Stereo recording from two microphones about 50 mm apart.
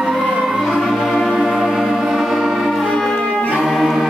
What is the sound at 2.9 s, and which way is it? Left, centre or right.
Music, centre.